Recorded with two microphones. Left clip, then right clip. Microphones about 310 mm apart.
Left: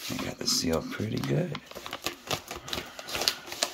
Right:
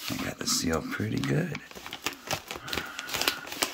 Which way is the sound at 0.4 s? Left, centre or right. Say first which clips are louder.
Left 2 dB; centre.